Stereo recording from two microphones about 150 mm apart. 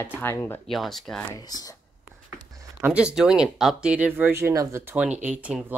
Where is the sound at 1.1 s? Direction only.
25° left (ahead or behind).